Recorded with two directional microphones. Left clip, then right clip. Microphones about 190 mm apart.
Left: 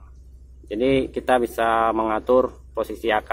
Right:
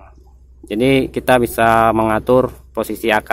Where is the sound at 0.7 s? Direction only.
55° right (ahead or behind).